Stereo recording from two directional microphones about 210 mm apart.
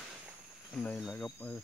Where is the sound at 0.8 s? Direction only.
Centre (ahead or behind).